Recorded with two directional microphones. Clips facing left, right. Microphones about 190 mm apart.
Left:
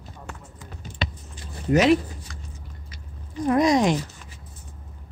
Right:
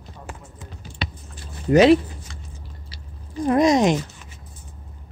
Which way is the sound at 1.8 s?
30° right (ahead or behind).